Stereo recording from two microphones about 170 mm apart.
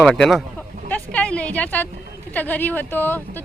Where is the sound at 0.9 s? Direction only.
5° left (ahead or behind).